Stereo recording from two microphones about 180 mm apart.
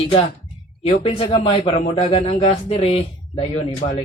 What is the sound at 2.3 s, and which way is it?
A man's voice, 40° left (ahead or behind).